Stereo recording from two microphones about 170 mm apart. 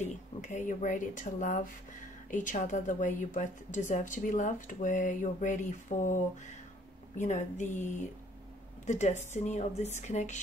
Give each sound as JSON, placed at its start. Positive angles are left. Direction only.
{"t": 0.0, "sound": "speech", "side_deg": 45}
{"t": 7.2, "sound": "speech", "side_deg": 45}